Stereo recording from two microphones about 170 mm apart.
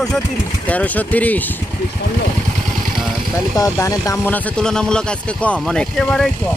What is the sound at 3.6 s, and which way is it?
Speech, 20° left (ahead or behind).